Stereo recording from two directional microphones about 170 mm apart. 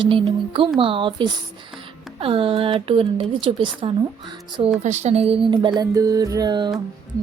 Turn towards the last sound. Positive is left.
turn(degrees=-25)  # may be behind; listen again after turning